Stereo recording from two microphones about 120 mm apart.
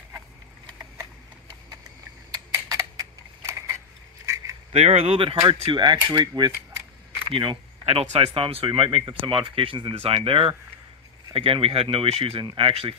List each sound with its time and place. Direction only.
2.7 s a sound: 25° right (ahead or behind)
4.7 s speech: 60° right (ahead or behind)
5.7 s speech: 40° right (ahead or behind)